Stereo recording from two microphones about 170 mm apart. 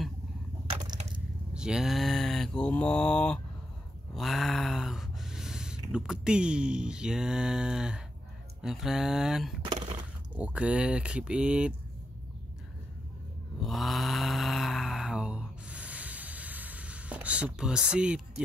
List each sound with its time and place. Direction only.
1.5 s mantra: 5° right (ahead or behind)
4.1 s speech: centre (ahead or behind)
8.5 s mantra: centre (ahead or behind)
9.6 s a sound: 30° right (ahead or behind)
10.3 s speech: 5° right (ahead or behind)
13.6 s mantra: centre (ahead or behind)